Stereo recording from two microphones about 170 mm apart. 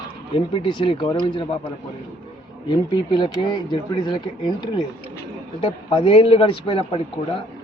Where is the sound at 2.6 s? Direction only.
25° left (ahead or behind).